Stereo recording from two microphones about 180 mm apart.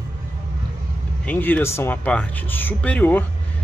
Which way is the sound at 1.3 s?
10° left (ahead or behind).